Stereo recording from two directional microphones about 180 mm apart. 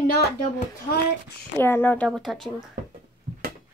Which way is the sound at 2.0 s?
Centre (ahead or behind).